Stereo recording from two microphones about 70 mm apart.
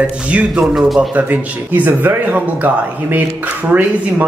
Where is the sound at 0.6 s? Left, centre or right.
Centre.